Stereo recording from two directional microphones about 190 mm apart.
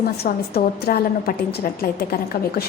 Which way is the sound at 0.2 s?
55° left (ahead or behind).